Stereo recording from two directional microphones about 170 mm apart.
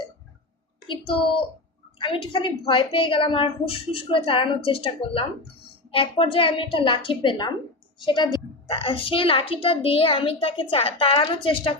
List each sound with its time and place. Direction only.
2.0 s a woman's voice: 30° left (ahead or behind)